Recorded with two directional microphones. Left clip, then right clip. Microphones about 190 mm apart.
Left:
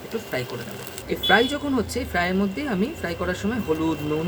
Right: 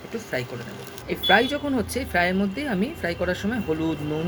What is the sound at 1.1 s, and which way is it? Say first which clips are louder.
Speech: even; centre (ahead or behind).